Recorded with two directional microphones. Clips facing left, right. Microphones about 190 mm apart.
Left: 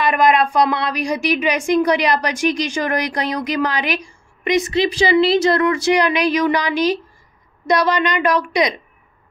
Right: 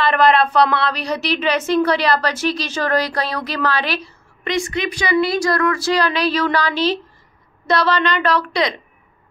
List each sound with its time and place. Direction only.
0.0 s a woman's voice: 10° left (ahead or behind)